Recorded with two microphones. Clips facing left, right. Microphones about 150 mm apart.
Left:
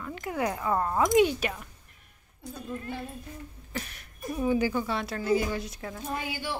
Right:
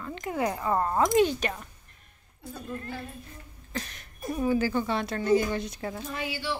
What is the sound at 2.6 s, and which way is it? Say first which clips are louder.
Speech: even; 10° left (ahead or behind).